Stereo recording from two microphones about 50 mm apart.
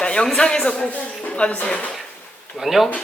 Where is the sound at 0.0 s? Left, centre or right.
Centre.